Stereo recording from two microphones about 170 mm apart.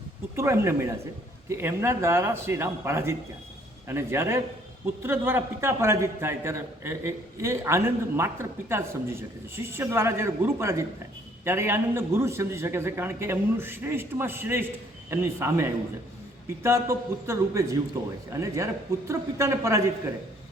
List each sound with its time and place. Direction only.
0.3 s a man's voice: 15° right (ahead or behind)